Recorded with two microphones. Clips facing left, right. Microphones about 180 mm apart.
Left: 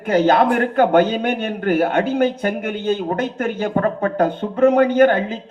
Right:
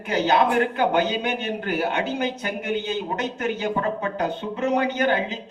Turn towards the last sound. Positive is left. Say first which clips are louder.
# left 8 dB
turn(degrees=50)  # may be behind; listen again after turning